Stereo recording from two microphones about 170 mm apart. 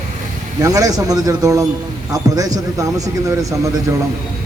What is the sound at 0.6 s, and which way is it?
Speech, 20° right (ahead or behind).